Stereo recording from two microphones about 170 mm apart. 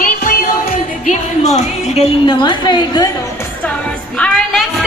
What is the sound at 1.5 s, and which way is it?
A woman's voice, 35° left (ahead or behind).